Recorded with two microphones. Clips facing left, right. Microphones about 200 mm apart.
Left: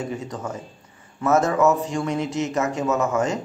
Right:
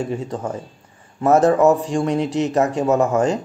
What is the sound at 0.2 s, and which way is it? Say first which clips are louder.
A man's voice: right 5 dB; 30° right (ahead or behind).